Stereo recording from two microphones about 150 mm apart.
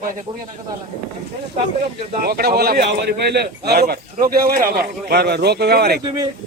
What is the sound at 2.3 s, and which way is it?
A man's voice, 90° right.